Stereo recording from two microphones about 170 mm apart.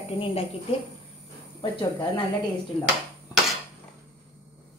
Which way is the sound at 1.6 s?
25° left (ahead or behind).